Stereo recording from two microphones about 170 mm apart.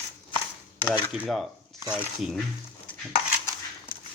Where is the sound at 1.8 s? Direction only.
10° right (ahead or behind).